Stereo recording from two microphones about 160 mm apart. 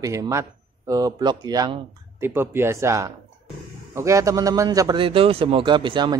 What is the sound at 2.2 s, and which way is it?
A man's voice, 15° right (ahead or behind).